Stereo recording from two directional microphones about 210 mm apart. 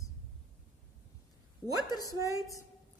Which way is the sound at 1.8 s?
20° left (ahead or behind).